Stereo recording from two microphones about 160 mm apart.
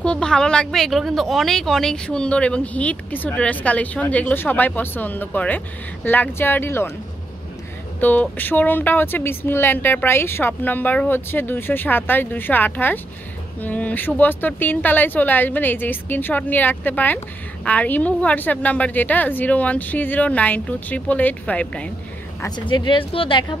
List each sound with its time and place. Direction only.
0.0 s speech: 5° left (ahead or behind)
8.0 s speech: 10° left (ahead or behind)
22.7 s speech: 30° left (ahead or behind)